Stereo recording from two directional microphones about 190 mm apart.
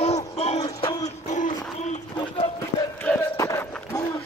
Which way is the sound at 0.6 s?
20° left (ahead or behind).